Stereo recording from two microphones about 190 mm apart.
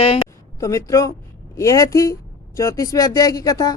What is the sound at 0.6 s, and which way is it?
A woman's voice, 15° left (ahead or behind).